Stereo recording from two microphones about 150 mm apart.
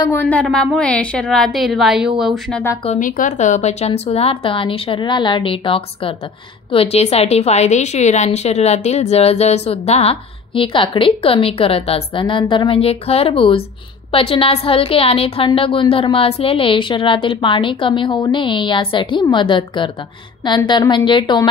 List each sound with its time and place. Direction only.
0.0 s a woman's voice: 15° left (ahead or behind)
3.0 s a woman's voice: 60° left (ahead or behind); by 21.5 s 30° left (ahead or behind)